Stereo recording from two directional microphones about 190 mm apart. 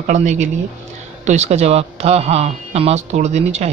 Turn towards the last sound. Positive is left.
turn(degrees=-35)  # may be behind; listen again after turning